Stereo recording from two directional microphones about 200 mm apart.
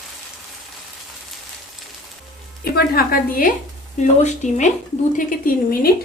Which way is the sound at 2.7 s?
50° left (ahead or behind).